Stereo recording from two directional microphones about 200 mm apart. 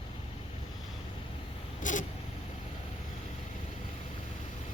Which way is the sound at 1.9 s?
40° left (ahead or behind).